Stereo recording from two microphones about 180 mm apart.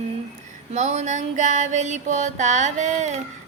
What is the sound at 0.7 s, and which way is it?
Female singing, 40° right (ahead or behind).